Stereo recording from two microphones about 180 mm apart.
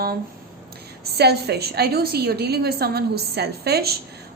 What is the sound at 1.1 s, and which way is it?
A woman's voice, 65° right (ahead or behind).